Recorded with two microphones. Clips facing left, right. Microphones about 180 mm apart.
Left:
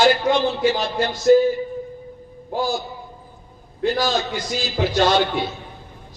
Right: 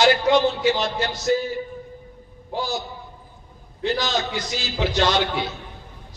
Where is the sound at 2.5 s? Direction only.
50° left (ahead or behind).